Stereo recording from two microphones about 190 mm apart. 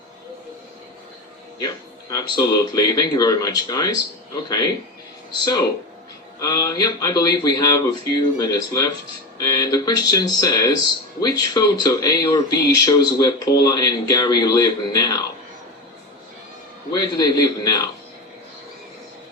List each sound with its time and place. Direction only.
1.5 s speech: 20° left (ahead or behind)
6.4 s speech: 20° left (ahead or behind)
16.9 s speech: 20° left (ahead or behind)